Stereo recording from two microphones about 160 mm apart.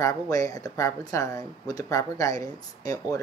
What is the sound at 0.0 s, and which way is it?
Speech, 20° left (ahead or behind).